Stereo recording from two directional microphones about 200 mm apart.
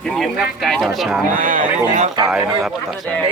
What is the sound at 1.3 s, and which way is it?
Speech, 40° right (ahead or behind).